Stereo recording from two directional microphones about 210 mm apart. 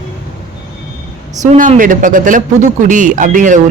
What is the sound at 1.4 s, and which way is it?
Speech, 35° right (ahead or behind).